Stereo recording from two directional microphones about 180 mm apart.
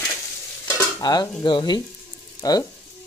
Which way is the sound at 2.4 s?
20° left (ahead or behind).